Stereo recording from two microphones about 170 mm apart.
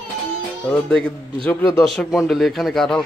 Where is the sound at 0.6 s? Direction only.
5° left (ahead or behind).